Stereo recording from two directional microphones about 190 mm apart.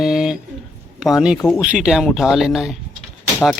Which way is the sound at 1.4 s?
15° left (ahead or behind).